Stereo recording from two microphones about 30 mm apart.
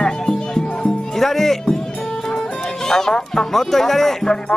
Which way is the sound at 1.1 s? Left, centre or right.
Centre.